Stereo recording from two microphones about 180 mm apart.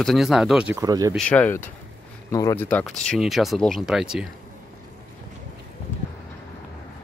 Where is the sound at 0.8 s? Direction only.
20° right (ahead or behind).